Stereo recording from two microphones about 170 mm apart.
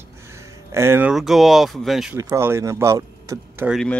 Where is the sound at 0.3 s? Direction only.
15° right (ahead or behind).